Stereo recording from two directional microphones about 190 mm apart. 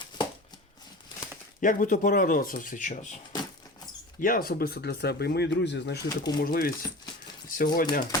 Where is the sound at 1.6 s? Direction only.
45° left (ahead or behind).